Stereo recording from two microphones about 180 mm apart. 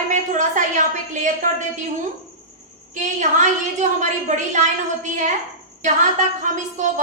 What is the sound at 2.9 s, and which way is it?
A woman's voice, 45° right (ahead or behind).